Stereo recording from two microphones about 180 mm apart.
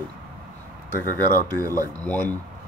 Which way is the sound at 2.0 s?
10° left (ahead or behind).